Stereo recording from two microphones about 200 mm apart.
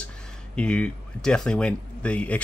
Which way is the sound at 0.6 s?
5° left (ahead or behind).